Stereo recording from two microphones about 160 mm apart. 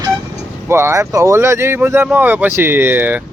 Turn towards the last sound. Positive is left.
turn(degrees=-10)  # may be behind; listen again after turning